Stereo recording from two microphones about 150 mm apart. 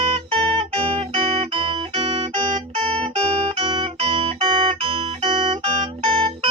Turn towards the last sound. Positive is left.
turn(degrees=-35)  # may be behind; listen again after turning